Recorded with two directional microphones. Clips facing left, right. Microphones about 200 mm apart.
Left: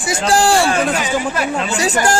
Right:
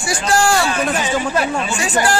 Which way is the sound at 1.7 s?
40° left (ahead or behind).